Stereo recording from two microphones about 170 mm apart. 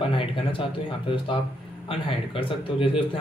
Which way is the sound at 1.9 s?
35° left (ahead or behind).